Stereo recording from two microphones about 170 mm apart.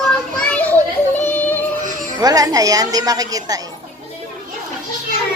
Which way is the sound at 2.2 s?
20° right (ahead or behind).